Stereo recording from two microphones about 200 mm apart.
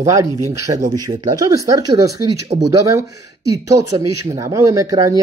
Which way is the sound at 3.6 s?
15° right (ahead or behind).